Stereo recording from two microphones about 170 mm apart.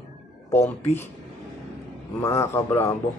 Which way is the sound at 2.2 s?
15° left (ahead or behind).